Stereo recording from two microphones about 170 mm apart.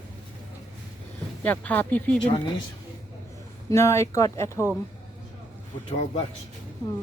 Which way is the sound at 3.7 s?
15° left (ahead or behind).